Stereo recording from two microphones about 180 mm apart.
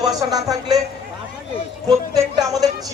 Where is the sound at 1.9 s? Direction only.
20° right (ahead or behind).